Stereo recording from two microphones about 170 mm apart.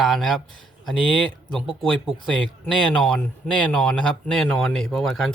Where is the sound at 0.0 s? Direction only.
Centre (ahead or behind).